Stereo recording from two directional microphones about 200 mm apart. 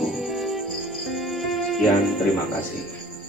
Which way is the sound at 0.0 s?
Centre (ahead or behind).